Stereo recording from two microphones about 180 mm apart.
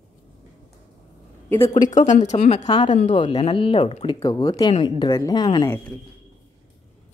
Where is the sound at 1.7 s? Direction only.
45° left (ahead or behind).